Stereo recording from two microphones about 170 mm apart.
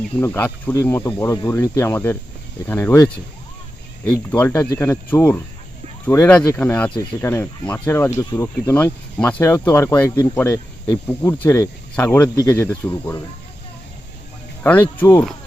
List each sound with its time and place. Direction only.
0.2 s speech: 10° left (ahead or behind)
4.3 s speech: 10° left (ahead or behind)
14.6 s speech: 10° left (ahead or behind)